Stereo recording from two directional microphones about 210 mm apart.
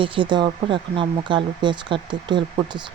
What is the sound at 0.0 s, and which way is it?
Speech, 25° right (ahead or behind).